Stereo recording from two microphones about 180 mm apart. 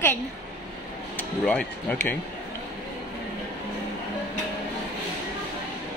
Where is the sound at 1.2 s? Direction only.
10° left (ahead or behind).